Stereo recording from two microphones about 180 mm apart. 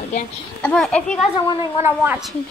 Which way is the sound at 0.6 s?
5° left (ahead or behind).